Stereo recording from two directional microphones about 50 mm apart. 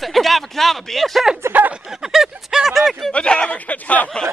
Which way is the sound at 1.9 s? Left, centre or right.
Centre.